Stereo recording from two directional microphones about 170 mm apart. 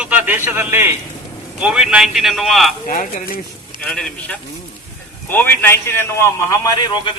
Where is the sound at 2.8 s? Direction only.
55° left (ahead or behind).